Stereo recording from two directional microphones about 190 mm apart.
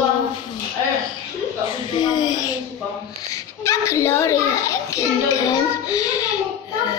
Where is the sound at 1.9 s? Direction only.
20° left (ahead or behind).